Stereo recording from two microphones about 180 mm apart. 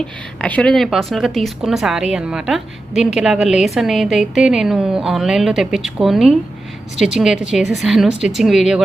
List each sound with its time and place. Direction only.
0.4 s speech: 5° left (ahead or behind)